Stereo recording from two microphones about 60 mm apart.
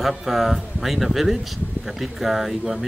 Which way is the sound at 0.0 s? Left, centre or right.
Centre.